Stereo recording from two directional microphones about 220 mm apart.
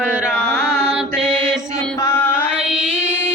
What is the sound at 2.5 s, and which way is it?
Music, 5° right (ahead or behind).